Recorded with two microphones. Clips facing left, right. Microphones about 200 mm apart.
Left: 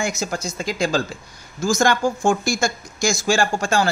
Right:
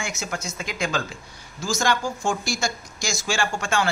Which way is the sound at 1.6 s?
50° left (ahead or behind).